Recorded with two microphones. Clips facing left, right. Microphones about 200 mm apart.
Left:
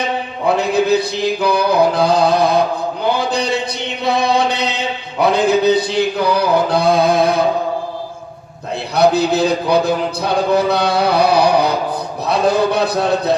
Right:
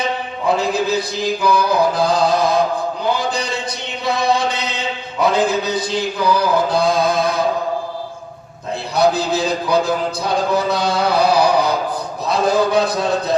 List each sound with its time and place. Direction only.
0.4 s music: 60° left (ahead or behind)
3.2 s a man's voice: 60° left (ahead or behind)
4.0 s chant: 60° left (ahead or behind)
5.2 s music: 60° left (ahead or behind)
9.0 s music: 60° left (ahead or behind)